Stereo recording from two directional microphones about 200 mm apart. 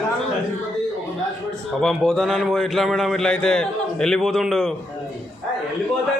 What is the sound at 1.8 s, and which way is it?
A man's voice, centre (ahead or behind).